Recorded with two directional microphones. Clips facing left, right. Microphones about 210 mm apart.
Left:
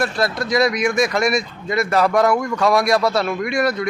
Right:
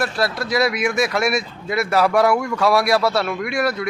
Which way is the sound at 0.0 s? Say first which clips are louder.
Left 1 dB; 5° right (ahead or behind).